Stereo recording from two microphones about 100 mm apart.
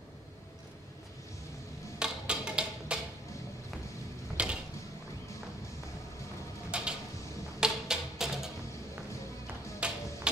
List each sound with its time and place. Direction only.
2.0 s music: 10° right (ahead or behind)
4.4 s mechanisms: 10° right (ahead or behind)
6.7 s a sound: 10° right (ahead or behind)
7.6 s music: 5° right (ahead or behind)
9.8 s tick-tock: 10° right (ahead or behind)